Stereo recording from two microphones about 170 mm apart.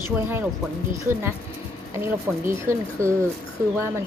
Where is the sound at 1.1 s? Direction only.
15° right (ahead or behind).